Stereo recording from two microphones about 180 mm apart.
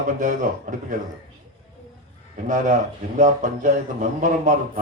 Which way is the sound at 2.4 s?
45° right (ahead or behind).